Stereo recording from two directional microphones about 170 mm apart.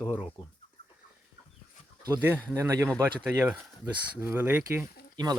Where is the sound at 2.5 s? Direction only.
15° right (ahead or behind).